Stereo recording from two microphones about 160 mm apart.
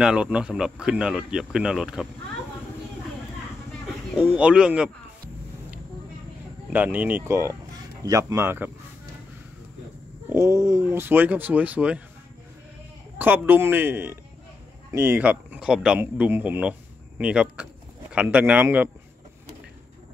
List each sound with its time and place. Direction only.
0.0 s speech: 5° right (ahead or behind)
4.2 s a man's voice: 5° right (ahead or behind)
6.7 s a man's voice: 10° right (ahead or behind)
10.3 s a man's voice: 15° right (ahead or behind)
13.2 s a man's voice: 10° right (ahead or behind)